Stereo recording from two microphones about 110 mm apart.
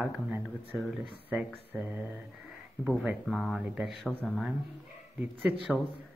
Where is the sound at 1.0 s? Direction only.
55° right (ahead or behind).